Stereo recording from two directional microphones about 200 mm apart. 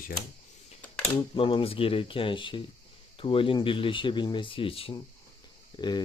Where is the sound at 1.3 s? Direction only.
25° left (ahead or behind).